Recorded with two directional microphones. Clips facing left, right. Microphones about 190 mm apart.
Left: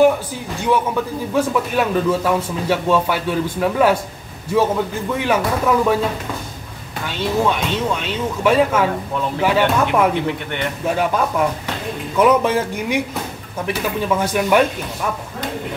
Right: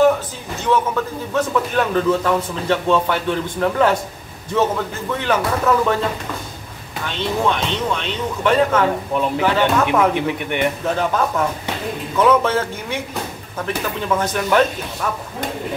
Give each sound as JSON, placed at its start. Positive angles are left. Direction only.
{"t": 0.6, "sound": "a man's voice", "side_deg": 10}
{"t": 5.1, "sound": "a man's voice", "side_deg": 10}
{"t": 7.1, "sound": "a man's voice", "side_deg": 10}
{"t": 10.2, "sound": "a man's voice", "side_deg": -15}
{"t": 11.0, "sound": "a man's voice", "side_deg": 10}